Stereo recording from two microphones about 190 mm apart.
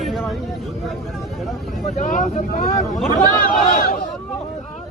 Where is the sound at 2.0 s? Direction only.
40° left (ahead or behind).